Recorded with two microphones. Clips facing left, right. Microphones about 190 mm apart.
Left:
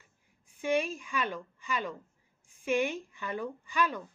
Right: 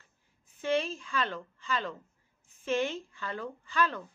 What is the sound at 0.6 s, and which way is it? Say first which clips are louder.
A woman's voice: even; 15° left (ahead or behind).